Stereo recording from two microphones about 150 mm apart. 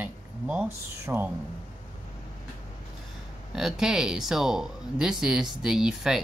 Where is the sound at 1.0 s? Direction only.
15° right (ahead or behind).